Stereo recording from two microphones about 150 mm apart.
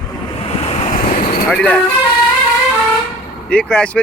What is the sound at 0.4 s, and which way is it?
Waves, 45° left (ahead or behind).